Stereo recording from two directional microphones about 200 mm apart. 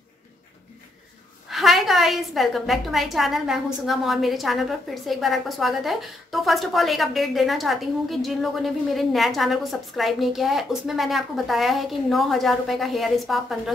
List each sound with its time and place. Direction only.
1.5 s a woman's voice: centre (ahead or behind)